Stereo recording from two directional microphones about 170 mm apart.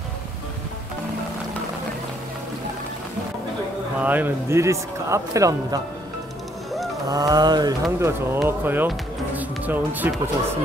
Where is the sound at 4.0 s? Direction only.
10° right (ahead or behind).